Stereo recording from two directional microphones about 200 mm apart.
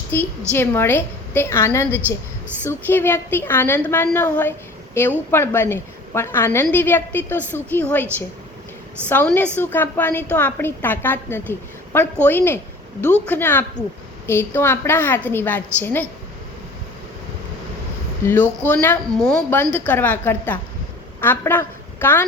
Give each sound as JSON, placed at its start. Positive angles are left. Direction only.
{"t": 0.1, "sound": "a woman's voice", "side_deg": 10}
{"t": 9.0, "sound": "a woman's voice", "side_deg": 10}
{"t": 18.3, "sound": "a woman's voice", "side_deg": 10}